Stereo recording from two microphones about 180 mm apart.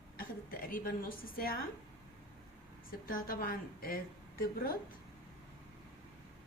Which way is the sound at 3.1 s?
50° left (ahead or behind).